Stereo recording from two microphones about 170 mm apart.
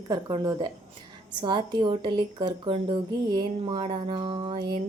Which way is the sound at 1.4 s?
30° right (ahead or behind).